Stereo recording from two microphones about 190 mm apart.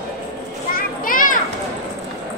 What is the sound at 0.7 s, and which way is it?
Children playing, 45° left (ahead or behind).